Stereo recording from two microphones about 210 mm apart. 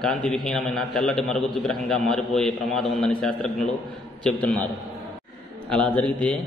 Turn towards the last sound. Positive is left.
turn(degrees=5)  # may be behind; listen again after turning